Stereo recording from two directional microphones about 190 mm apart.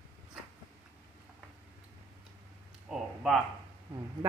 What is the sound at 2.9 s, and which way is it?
Speech, centre (ahead or behind).